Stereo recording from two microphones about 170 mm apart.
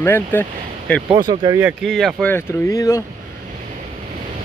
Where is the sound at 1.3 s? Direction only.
25° right (ahead or behind).